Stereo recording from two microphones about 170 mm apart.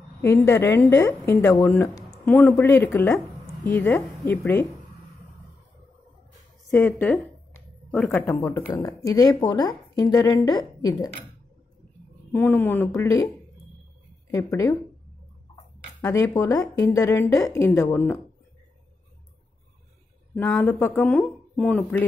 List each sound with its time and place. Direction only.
0.2 s speech: 15° left (ahead or behind)
6.7 s a woman's voice: 10° left (ahead or behind)
12.3 s speech: 15° left (ahead or behind)
14.3 s a woman's voice: 20° left (ahead or behind)
20.3 s speech: 10° left (ahead or behind)